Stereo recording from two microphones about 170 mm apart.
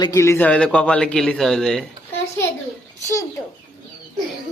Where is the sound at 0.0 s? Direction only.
20° left (ahead or behind).